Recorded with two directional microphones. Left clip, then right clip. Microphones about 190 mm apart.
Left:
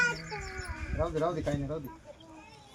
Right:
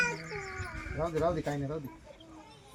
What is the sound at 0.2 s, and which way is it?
Livestock, 30° right (ahead or behind).